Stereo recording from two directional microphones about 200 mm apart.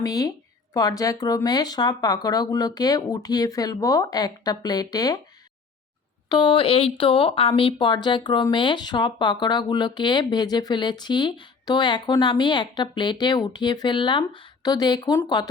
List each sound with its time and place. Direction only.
0.0 s speech: 20° left (ahead or behind)
6.2 s speech: 20° left (ahead or behind)